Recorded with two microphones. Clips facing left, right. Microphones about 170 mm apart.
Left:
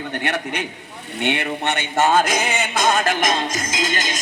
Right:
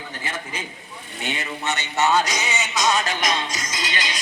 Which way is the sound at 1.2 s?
65° left (ahead or behind).